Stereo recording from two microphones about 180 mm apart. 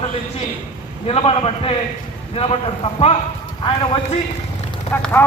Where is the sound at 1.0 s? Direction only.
30° left (ahead or behind).